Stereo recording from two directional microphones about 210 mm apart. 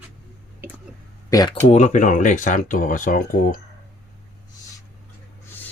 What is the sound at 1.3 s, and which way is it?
Speech, 15° left (ahead or behind).